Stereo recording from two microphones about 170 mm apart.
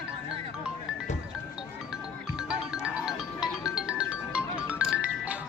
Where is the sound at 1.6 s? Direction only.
5° right (ahead or behind).